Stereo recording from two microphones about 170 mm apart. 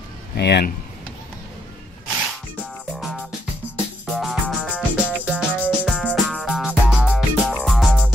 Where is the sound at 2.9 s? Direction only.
5° right (ahead or behind).